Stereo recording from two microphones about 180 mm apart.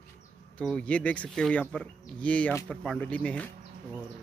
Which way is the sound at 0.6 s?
5° left (ahead or behind).